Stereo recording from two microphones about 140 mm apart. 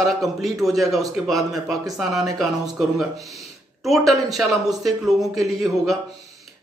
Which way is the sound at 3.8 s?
Centre (ahead or behind).